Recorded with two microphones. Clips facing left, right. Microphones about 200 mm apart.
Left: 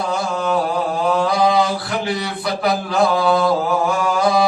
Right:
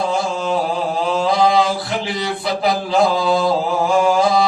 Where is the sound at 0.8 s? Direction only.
25° right (ahead or behind).